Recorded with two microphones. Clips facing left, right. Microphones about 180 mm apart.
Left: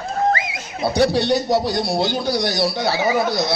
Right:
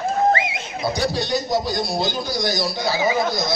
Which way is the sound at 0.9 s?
65° left (ahead or behind).